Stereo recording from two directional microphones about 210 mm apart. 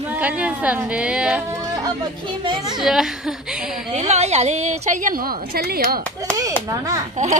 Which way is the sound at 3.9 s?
30° right (ahead or behind).